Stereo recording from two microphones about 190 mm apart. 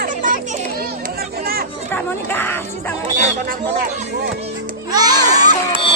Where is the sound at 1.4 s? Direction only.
50° right (ahead or behind).